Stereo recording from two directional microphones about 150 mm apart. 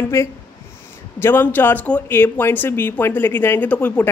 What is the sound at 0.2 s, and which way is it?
Speech, 20° left (ahead or behind).